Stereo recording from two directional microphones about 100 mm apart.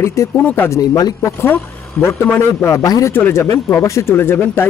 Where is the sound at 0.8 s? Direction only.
40° left (ahead or behind).